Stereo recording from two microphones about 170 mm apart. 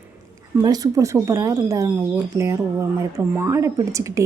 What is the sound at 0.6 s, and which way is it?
A woman's voice, 20° right (ahead or behind).